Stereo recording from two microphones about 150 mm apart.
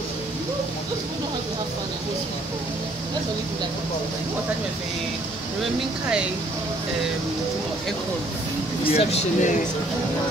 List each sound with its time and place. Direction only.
8.9 s speech: 55° left (ahead or behind)